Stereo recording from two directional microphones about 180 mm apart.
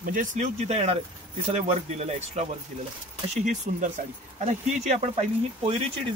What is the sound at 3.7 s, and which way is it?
Speech, 45° right (ahead or behind).